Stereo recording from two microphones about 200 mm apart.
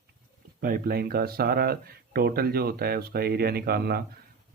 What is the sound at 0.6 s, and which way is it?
Speech, 50° right (ahead or behind).